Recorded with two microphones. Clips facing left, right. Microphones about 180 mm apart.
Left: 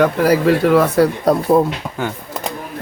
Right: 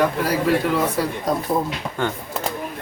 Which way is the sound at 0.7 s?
65° left (ahead or behind).